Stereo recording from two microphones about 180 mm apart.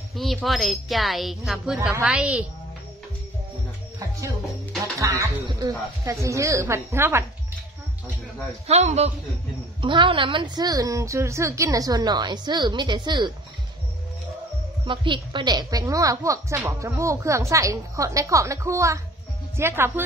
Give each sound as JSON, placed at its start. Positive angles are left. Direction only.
{"t": 0.1, "sound": "a woman's voice", "side_deg": 0}
{"t": 4.9, "sound": "a woman's voice", "side_deg": -15}
{"t": 8.6, "sound": "a woman's voice", "side_deg": -35}
{"t": 14.9, "sound": "a woman's voice", "side_deg": -25}